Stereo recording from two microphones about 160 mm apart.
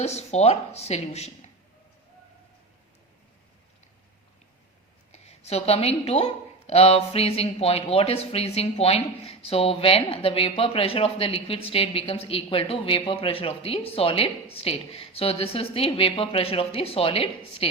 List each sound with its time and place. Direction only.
0.0 s speech: 40° left (ahead or behind)
5.1 s a woman's voice: 40° left (ahead or behind)